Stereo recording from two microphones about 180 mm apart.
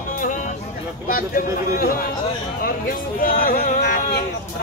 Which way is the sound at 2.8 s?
55° left (ahead or behind).